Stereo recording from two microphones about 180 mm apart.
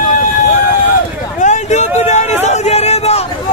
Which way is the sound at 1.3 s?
40° left (ahead or behind).